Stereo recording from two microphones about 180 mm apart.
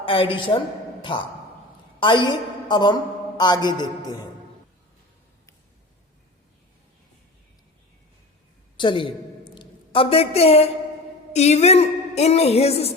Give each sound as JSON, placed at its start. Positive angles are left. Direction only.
{"t": 0.0, "sound": "a woman's voice", "side_deg": 30}
{"t": 8.8, "sound": "a woman's voice", "side_deg": 25}